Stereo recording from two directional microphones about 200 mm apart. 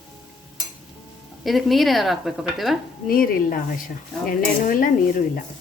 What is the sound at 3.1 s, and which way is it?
Speech, 45° left (ahead or behind).